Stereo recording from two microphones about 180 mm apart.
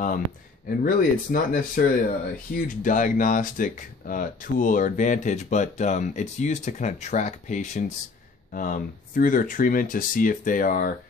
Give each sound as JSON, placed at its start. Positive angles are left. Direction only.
{"t": 0.7, "sound": "speech", "side_deg": 50}